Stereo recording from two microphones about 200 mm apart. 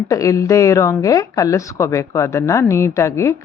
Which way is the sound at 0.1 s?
15° left (ahead or behind).